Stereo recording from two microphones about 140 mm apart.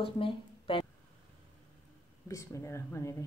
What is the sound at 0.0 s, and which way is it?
Speech, 40° left (ahead or behind).